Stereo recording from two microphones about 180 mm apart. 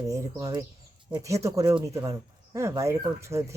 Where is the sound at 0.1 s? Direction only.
20° right (ahead or behind).